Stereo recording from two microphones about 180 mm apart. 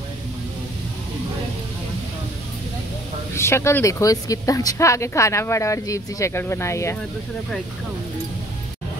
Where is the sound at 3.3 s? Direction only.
15° left (ahead or behind).